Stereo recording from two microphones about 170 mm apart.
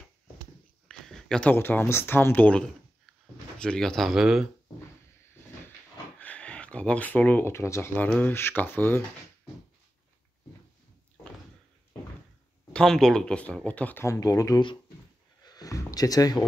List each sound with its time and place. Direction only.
0.8 s speech: centre (ahead or behind)
6.1 s speech: 10° left (ahead or behind)
12.7 s speech: 5° left (ahead or behind); by 14.8 s 25° left (ahead or behind)
15.4 s a sound: 20° left (ahead or behind)